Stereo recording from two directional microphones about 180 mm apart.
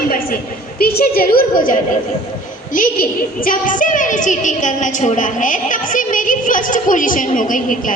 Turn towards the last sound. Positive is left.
turn(degrees=45)  # may be behind; listen again after turning